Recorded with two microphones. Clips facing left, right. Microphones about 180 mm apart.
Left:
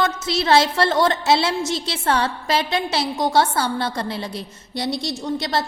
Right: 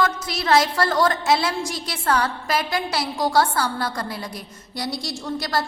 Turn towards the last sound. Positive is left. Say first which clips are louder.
# left 2 dB
turn(degrees=25)  # may be behind; listen again after turning